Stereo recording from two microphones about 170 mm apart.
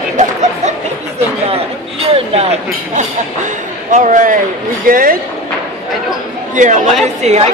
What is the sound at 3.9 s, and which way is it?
A man's voice, 50° right (ahead or behind).